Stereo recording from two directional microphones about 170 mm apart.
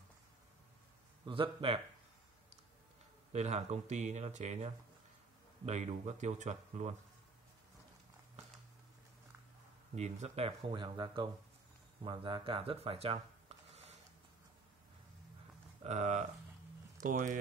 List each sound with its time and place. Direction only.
1.2 s speech: 30° right (ahead or behind)
3.3 s speech: 40° right (ahead or behind)
9.9 s speech: 40° right (ahead or behind)
15.8 s speech: 45° right (ahead or behind)